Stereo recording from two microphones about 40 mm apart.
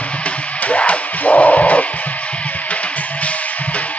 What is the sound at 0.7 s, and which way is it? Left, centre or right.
Music, left.